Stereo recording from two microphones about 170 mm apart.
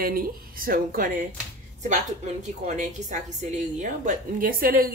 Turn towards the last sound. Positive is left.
turn(degrees=-55)  # may be behind; listen again after turning